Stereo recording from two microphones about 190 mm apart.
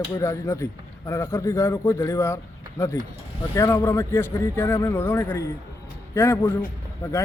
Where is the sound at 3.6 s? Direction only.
15° left (ahead or behind).